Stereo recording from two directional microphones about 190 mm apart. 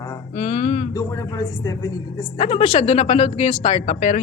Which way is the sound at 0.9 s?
20° left (ahead or behind).